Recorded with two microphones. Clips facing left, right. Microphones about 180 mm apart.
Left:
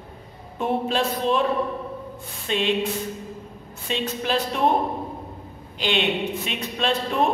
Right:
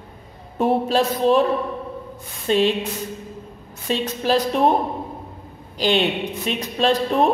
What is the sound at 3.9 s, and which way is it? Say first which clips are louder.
Speech: right 5 dB; 40° right (ahead or behind).